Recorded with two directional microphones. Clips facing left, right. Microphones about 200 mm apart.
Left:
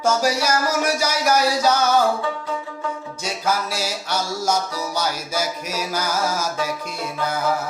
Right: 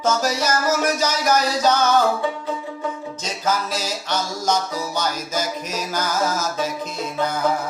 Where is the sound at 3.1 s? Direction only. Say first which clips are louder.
Left 1 dB; 10° left (ahead or behind).